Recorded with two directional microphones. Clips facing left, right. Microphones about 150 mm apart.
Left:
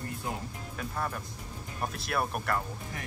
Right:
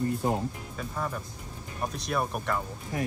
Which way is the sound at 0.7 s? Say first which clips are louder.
Left 1 dB; 5° right (ahead or behind).